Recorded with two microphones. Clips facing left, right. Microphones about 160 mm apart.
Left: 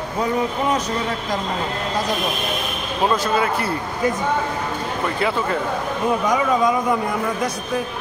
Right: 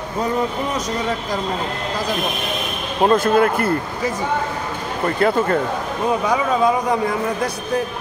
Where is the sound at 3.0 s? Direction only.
55° right (ahead or behind).